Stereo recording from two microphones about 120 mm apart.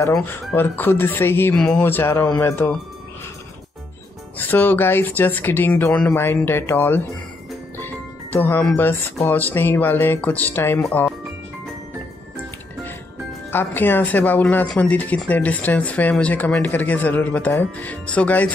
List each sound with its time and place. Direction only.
0.3 s speech: 15° left (ahead or behind)
1.5 s speech: 10° left (ahead or behind)
4.4 s speech: 15° left (ahead or behind)
13.5 s speech: 15° left (ahead or behind)